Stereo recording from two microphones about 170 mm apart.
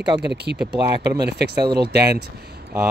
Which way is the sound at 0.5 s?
90° right.